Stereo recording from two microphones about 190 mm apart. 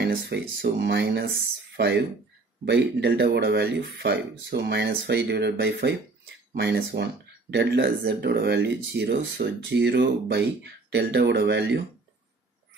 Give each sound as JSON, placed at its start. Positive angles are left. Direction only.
{"t": 0.0, "sound": "speech", "side_deg": -60}